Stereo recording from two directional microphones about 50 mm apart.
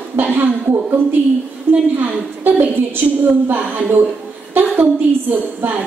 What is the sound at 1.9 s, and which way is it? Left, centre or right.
A woman's voice, right.